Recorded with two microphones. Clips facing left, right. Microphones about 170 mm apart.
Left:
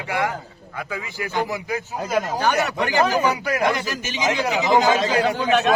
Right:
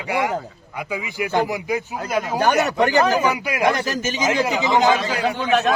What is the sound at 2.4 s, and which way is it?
Speech, 50° right (ahead or behind).